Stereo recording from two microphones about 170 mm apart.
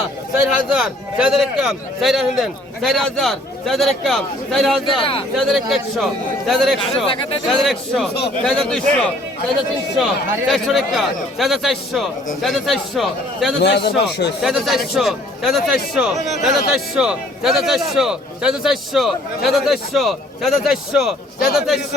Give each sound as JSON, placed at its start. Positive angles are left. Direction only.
{"t": 0.3, "sound": "a man's voice", "side_deg": -5}
{"t": 6.9, "sound": "speech", "side_deg": 30}
{"t": 7.4, "sound": "a man's voice", "side_deg": 0}
{"t": 10.5, "sound": "a man's voice", "side_deg": 0}
{"t": 13.6, "sound": "speech", "side_deg": 80}
{"t": 14.4, "sound": "a man's voice", "side_deg": 0}